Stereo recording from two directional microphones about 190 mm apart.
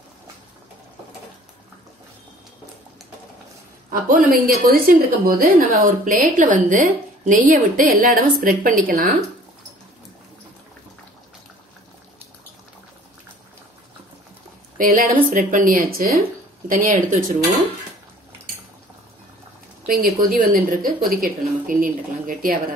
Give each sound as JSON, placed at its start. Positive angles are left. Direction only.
{"t": 3.9, "sound": "a woman's voice", "side_deg": -45}
{"t": 14.8, "sound": "a woman's voice", "side_deg": -45}
{"t": 19.9, "sound": "a woman's voice", "side_deg": -50}